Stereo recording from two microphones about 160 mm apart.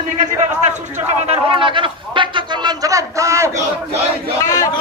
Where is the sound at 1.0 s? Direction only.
40° right (ahead or behind); by 3.6 s 20° right (ahead or behind).